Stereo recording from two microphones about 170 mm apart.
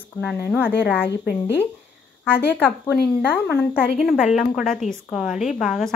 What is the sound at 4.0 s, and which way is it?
A woman's voice, 5° right (ahead or behind).